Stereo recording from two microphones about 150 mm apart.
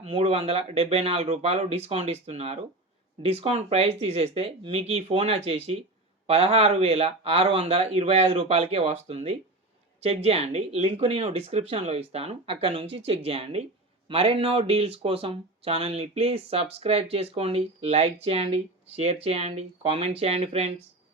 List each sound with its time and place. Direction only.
0.0 s speech: 45° right (ahead or behind)